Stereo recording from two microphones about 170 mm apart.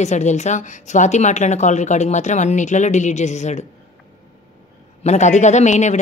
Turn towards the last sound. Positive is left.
turn(degrees=45)  # may be behind; listen again after turning